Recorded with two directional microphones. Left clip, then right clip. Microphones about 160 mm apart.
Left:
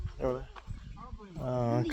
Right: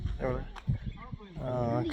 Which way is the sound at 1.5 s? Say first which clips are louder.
Even; 30° left (ahead or behind).